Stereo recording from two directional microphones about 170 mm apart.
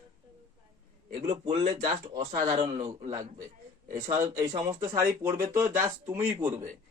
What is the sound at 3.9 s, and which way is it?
A man's voice, 20° right (ahead or behind).